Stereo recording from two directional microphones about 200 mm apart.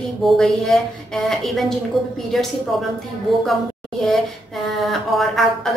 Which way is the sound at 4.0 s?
Centre (ahead or behind).